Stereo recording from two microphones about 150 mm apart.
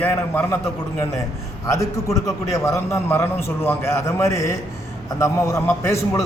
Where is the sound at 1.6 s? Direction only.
20° left (ahead or behind).